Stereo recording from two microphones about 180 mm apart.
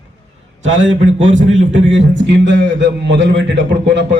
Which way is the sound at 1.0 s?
40° right (ahead or behind).